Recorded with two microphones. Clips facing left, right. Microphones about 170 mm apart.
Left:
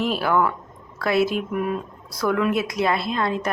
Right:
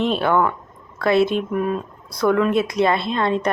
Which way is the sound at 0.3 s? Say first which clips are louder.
Right 1 dB; 25° right (ahead or behind).